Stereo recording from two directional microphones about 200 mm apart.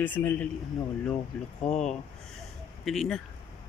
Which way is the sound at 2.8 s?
Centre (ahead or behind).